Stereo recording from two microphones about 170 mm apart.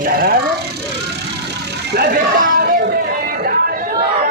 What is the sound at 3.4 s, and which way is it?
Chatter, 60° right (ahead or behind).